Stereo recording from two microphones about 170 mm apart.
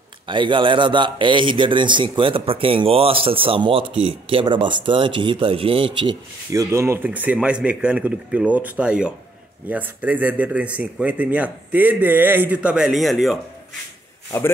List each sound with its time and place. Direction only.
0.3 s speech: 30° right (ahead or behind); by 13.4 s centre (ahead or behind)